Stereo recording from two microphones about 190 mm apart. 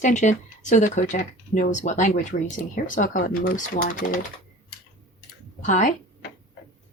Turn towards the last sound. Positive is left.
turn(degrees=40)  # may be behind; listen again after turning